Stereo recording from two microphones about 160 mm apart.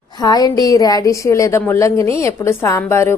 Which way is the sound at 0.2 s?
25° left (ahead or behind).